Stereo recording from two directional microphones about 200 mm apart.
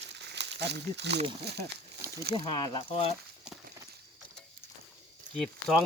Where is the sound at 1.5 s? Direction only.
55° right (ahead or behind).